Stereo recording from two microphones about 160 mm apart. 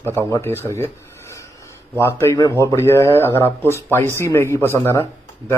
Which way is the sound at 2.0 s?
15° left (ahead or behind).